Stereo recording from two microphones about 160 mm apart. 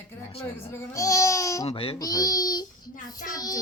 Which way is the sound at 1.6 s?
35° left (ahead or behind).